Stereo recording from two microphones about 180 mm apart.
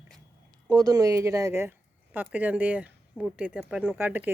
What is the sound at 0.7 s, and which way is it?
Speech, 20° right (ahead or behind).